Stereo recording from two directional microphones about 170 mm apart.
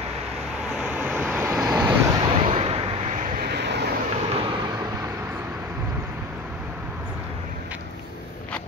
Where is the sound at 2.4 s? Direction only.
35° right (ahead or behind).